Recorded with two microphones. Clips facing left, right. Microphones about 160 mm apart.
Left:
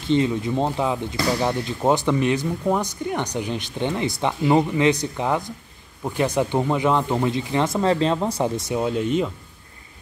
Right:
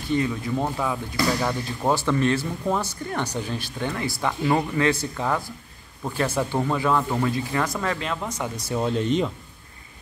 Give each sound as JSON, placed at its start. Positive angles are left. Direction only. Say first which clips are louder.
{"t": 0.1, "sound": "speech", "louder": "left 4 dB", "side_deg": 20}
{"t": 8.6, "sound": "speech", "louder": "left 1 dB", "side_deg": 10}